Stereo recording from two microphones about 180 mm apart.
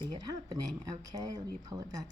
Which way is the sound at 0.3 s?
20° right (ahead or behind).